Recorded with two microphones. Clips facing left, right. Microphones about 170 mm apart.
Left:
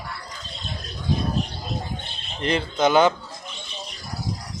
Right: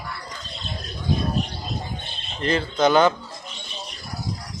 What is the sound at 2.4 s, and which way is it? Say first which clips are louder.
Speech: right 1 dB; 15° left (ahead or behind).